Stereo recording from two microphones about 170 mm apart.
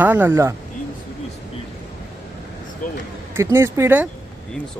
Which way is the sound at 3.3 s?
15° right (ahead or behind).